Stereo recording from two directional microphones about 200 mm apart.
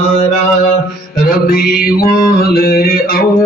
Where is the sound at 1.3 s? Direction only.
45° left (ahead or behind).